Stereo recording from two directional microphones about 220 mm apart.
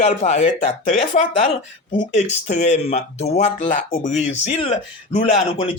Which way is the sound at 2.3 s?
30° left (ahead or behind).